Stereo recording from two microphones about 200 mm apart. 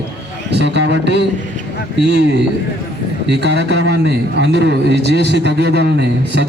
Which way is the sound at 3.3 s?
60° right (ahead or behind).